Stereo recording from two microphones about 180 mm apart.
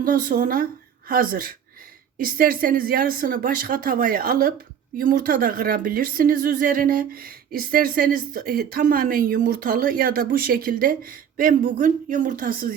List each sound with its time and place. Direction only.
0.0 s a woman's voice: 50° right (ahead or behind)